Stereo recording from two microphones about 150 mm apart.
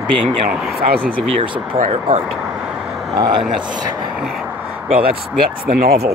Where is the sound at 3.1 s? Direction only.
30° right (ahead or behind).